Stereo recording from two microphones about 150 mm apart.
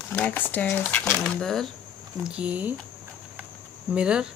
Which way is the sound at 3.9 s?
5° right (ahead or behind).